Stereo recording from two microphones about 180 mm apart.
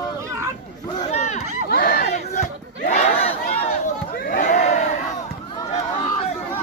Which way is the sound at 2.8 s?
40° left (ahead or behind).